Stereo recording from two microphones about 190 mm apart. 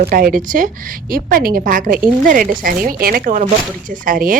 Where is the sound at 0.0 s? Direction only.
50° right (ahead or behind).